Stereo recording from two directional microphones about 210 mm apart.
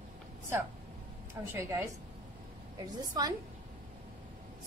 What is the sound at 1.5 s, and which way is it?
Speech, 10° right (ahead or behind).